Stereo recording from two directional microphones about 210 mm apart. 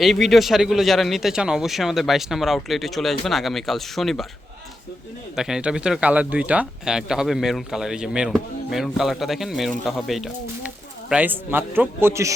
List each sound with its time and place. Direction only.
0.0 s speech: centre (ahead or behind)
5.4 s a man's voice: 5° right (ahead or behind)